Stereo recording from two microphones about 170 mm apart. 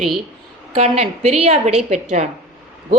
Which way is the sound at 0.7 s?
35° right (ahead or behind).